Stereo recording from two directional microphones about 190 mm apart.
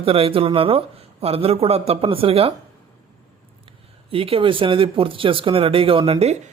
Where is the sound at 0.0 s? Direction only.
30° right (ahead or behind).